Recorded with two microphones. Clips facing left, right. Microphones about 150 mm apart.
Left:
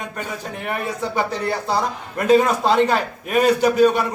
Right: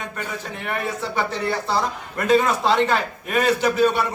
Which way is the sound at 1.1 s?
10° left (ahead or behind).